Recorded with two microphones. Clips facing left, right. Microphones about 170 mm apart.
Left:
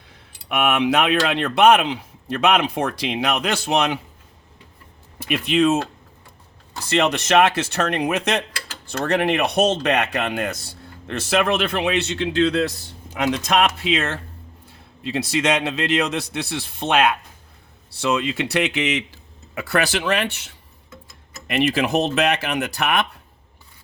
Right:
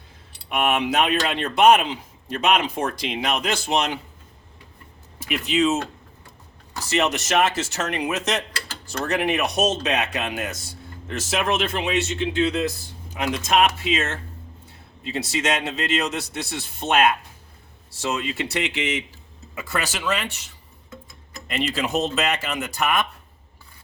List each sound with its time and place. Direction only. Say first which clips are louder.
0.5 s a man's voice: left 2 dB; 65° left (ahead or behind)
5.3 s a man's voice: left 3 dB; 60° left (ahead or behind)
6.8 s a man's voice: left 3 dB; 60° left (ahead or behind)
21.4 s a man's voice: left 6 dB; 65° left (ahead or behind)